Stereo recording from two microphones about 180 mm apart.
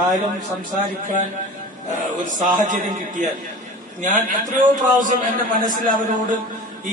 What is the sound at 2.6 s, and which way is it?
A man's voice, 45° right (ahead or behind).